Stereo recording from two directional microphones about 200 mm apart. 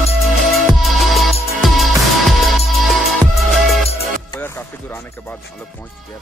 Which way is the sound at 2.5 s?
Centre (ahead or behind).